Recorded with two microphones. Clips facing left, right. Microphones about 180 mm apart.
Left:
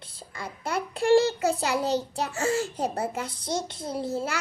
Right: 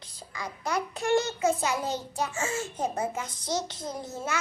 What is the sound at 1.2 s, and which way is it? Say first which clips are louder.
Child singing: left 1 dB; 35° left (ahead or behind).